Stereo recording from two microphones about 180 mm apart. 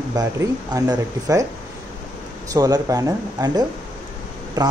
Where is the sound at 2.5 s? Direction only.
20° right (ahead or behind).